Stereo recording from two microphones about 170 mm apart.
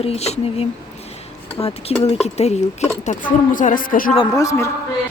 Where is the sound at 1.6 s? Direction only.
20° left (ahead or behind).